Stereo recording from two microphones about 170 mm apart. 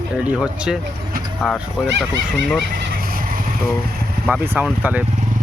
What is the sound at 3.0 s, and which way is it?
Vehicle, 60° right (ahead or behind).